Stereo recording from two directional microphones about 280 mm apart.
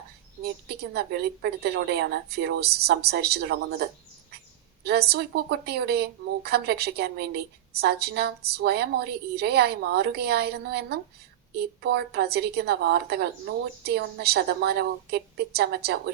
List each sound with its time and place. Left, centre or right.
0.8 s speech: right